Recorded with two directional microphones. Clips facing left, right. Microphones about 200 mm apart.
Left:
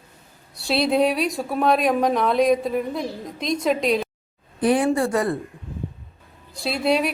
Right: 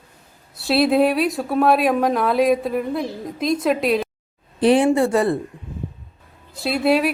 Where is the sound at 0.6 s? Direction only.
5° right (ahead or behind).